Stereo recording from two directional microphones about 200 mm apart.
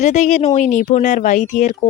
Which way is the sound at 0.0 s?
35° left (ahead or behind).